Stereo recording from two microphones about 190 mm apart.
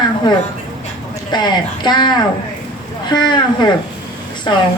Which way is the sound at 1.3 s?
20° left (ahead or behind).